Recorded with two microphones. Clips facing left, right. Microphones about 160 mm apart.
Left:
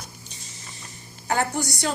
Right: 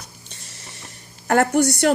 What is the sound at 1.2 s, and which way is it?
Speech, 65° right (ahead or behind).